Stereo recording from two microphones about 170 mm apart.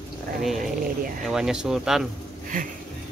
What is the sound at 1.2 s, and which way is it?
Speech, 5° right (ahead or behind).